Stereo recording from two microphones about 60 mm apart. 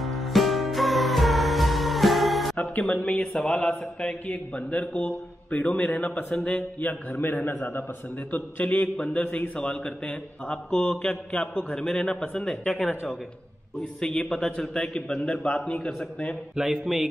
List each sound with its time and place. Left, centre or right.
0.0 s music: centre
3.0 s a man's voice: centre
8.8 s a man's voice: centre
13.7 s a man's voice: centre
16.5 s a man's voice: centre